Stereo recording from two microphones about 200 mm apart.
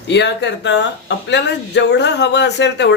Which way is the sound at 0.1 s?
60° left (ahead or behind).